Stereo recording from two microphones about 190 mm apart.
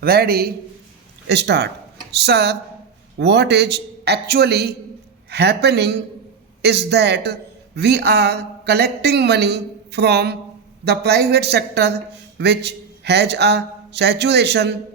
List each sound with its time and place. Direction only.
0.0 s a man's voice: 55° right (ahead or behind)